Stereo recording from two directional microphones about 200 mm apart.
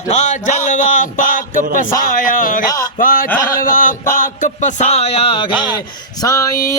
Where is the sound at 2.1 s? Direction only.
40° left (ahead or behind).